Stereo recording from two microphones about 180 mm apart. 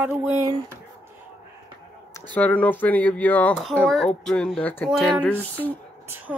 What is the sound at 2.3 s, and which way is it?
Speech, 10° left (ahead or behind).